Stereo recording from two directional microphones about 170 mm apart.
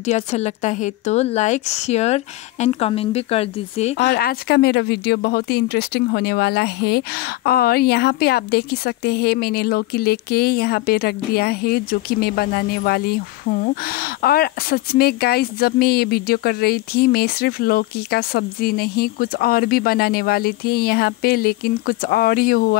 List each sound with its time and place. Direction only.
0.0 s a woman's voice: 40° left (ahead or behind)
4.0 s speech: 70° left (ahead or behind)